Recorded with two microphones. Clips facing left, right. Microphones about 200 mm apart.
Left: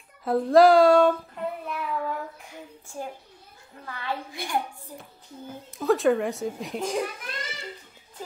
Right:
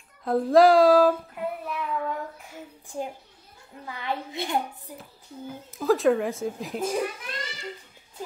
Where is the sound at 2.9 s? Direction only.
15° right (ahead or behind).